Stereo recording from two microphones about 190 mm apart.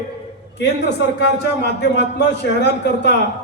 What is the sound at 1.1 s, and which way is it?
A man's voice, 65° left (ahead or behind).